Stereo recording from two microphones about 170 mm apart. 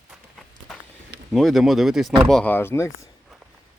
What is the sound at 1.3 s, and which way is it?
Speech, centre (ahead or behind).